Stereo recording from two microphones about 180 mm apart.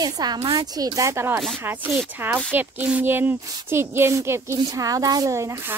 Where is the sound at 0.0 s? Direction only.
20° right (ahead or behind).